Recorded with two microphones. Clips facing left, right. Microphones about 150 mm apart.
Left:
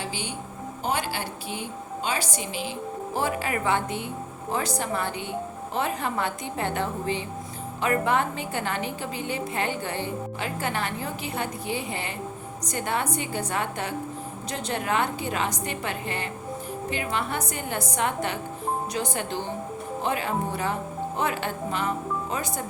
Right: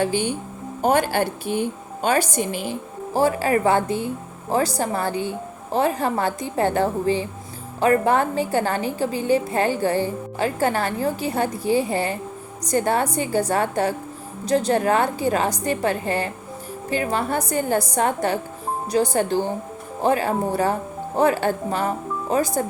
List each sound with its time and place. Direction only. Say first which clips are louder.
0.0 s a woman's voice: right 11 dB; 50° right (ahead or behind)
3.1 s a woman's voice: right 9 dB; 35° right (ahead or behind)